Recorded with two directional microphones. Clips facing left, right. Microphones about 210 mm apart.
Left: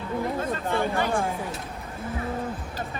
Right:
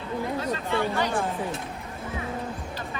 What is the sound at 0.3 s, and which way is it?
Speech, 50° left (ahead or behind).